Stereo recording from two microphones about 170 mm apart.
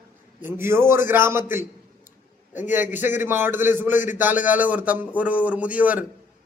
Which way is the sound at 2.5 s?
45° left (ahead or behind).